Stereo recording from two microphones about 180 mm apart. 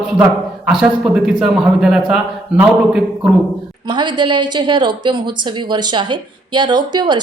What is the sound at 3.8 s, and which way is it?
A woman's voice, 25° right (ahead or behind).